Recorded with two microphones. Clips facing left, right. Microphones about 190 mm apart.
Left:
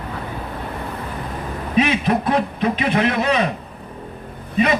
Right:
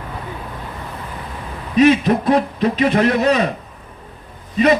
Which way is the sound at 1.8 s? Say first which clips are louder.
Right 5 dB; 45° right (ahead or behind).